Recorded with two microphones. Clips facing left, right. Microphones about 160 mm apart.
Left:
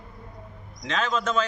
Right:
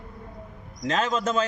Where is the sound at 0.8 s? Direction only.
40° right (ahead or behind).